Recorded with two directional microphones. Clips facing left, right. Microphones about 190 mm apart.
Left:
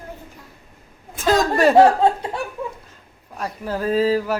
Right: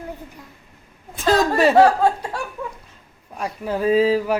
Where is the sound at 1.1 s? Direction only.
Centre (ahead or behind).